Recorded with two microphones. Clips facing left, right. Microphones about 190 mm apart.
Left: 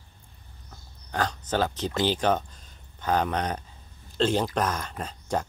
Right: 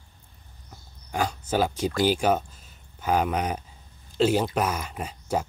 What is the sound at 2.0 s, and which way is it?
Speech, 10° right (ahead or behind).